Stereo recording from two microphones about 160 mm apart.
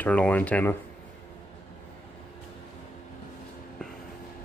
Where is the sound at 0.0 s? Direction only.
10° left (ahead or behind).